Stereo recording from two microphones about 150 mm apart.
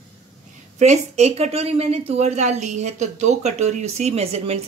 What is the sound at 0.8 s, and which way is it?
Speech, 50° right (ahead or behind).